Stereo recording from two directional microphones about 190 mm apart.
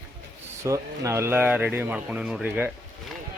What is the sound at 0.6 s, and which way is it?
Speech, 15° right (ahead or behind).